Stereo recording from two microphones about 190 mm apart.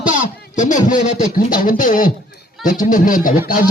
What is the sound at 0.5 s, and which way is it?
Speech, 40° left (ahead or behind).